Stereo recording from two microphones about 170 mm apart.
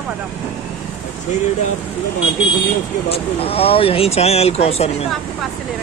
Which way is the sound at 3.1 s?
35° left (ahead or behind).